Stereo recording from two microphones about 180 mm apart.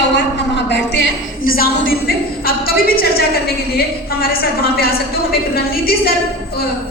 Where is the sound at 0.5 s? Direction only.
75° left (ahead or behind).